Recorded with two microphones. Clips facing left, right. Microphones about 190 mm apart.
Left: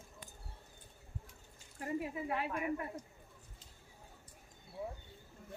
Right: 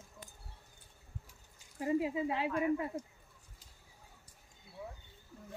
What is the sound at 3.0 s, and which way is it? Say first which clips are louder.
Speech: right 6 dB; 30° right (ahead or behind).